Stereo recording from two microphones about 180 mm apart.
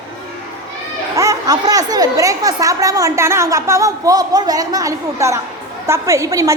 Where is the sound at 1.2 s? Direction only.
20° right (ahead or behind).